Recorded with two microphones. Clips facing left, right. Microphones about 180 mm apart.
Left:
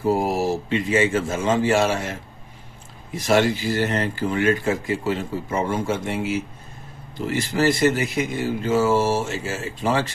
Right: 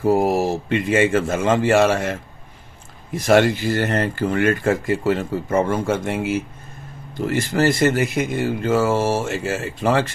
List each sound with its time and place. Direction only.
0.2 s speech: 55° right (ahead or behind)
3.2 s speech: 55° right (ahead or behind)